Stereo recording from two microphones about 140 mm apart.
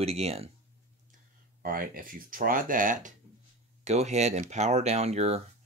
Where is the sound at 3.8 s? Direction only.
50° right (ahead or behind).